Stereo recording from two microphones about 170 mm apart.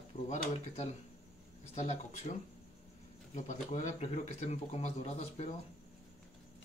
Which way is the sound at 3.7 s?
45° left (ahead or behind).